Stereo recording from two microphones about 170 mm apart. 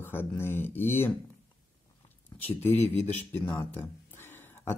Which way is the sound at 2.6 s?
10° left (ahead or behind).